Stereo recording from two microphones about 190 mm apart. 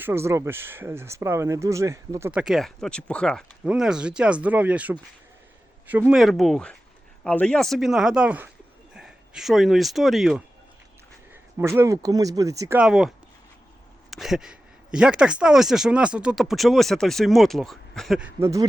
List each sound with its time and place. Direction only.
0.0 s speech: 15° right (ahead or behind)
2.4 s speech: centre (ahead or behind)
11.5 s speech: 15° right (ahead or behind)
12.8 s speech: centre (ahead or behind)